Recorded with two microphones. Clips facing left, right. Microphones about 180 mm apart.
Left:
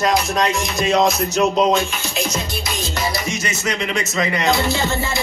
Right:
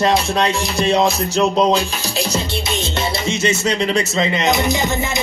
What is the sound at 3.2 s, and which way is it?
Speech, 25° right (ahead or behind).